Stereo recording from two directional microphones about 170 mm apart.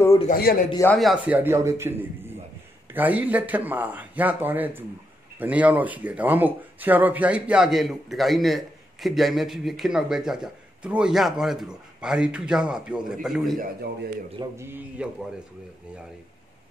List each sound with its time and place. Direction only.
0.3 s a man's voice: 60° left (ahead or behind)
0.9 s speech: 5° right (ahead or behind)
14.6 s speech: 10° right (ahead or behind)